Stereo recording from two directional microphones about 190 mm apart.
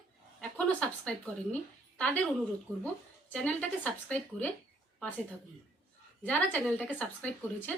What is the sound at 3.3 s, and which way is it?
A woman's voice, 5° left (ahead or behind).